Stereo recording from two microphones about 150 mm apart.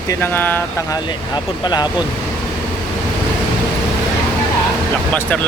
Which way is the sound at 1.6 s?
30° left (ahead or behind).